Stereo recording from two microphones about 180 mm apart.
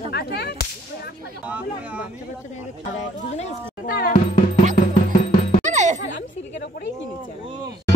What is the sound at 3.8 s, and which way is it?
Whip, 55° left (ahead or behind).